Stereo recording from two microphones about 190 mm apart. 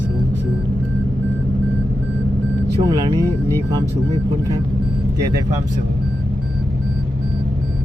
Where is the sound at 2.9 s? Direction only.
25° right (ahead or behind).